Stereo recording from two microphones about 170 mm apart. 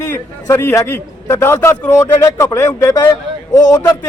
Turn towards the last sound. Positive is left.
turn(degrees=20)  # may be behind; listen again after turning